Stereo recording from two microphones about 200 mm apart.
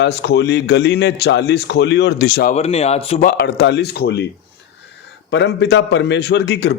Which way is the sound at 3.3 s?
60° left (ahead or behind).